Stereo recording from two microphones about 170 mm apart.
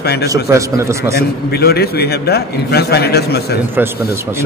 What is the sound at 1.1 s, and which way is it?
A man's voice, 65° left (ahead or behind).